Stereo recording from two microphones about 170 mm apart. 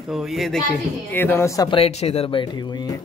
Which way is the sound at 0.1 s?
Centre (ahead or behind).